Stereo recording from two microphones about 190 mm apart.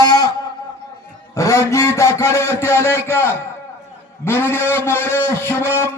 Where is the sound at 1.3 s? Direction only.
15° left (ahead or behind).